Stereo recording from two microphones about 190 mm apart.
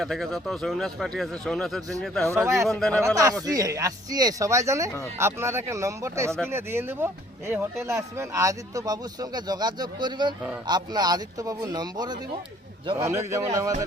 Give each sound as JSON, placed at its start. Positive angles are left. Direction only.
{"t": 0.0, "sound": "speech", "side_deg": 0}
{"t": 2.3, "sound": "speech", "side_deg": -15}
{"t": 2.6, "sound": "speech", "side_deg": 5}
{"t": 3.4, "sound": "a man's voice", "side_deg": -20}